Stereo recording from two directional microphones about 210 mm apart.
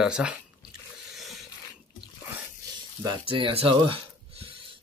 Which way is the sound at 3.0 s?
20° right (ahead or behind).